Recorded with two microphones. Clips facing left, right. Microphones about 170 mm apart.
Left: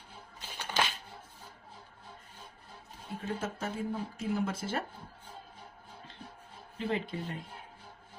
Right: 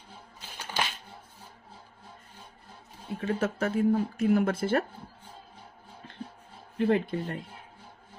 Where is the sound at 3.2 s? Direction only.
70° right (ahead or behind).